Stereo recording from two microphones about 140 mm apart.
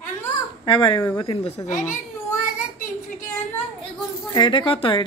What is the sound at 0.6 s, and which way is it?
Speech, 35° left (ahead or behind).